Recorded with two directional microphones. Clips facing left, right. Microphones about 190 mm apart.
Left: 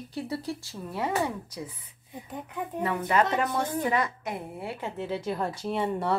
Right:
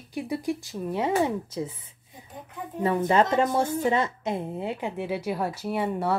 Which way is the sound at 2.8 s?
25° right (ahead or behind).